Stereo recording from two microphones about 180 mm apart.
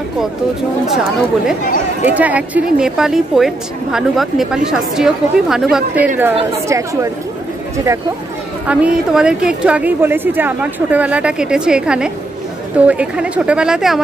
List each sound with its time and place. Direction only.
2.0 s a woman's voice: 10° right (ahead or behind)
8.6 s a woman's voice: 5° right (ahead or behind)